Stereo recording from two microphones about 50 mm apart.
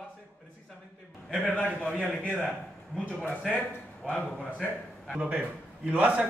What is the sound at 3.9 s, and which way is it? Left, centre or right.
Speech, centre.